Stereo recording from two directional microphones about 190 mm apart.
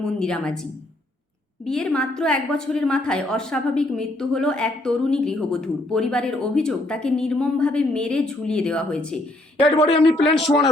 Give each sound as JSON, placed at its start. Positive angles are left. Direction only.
{"t": 0.0, "sound": "a woman's voice", "side_deg": 5}
{"t": 1.6, "sound": "a woman's voice", "side_deg": 5}
{"t": 9.6, "sound": "speech", "side_deg": 30}